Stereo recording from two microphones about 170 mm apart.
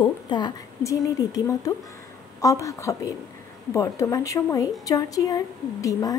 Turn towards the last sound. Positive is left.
turn(degrees=20)  # may be behind; listen again after turning